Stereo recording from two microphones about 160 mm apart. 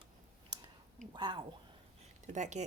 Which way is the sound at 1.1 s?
25° right (ahead or behind).